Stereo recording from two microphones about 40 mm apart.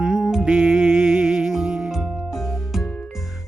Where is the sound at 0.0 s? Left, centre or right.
Centre.